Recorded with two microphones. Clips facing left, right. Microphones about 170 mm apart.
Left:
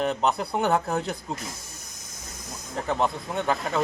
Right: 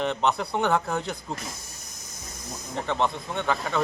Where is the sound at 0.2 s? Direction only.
5° left (ahead or behind).